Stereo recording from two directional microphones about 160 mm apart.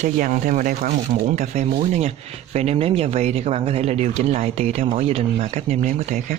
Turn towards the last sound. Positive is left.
turn(degrees=-50)  # may be behind; listen again after turning